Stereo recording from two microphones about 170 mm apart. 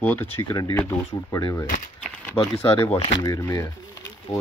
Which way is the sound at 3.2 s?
20° left (ahead or behind).